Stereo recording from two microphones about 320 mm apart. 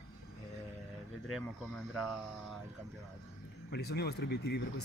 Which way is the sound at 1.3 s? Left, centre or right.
Centre.